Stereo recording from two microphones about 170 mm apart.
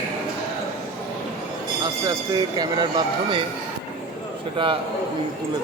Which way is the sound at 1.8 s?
25° right (ahead or behind).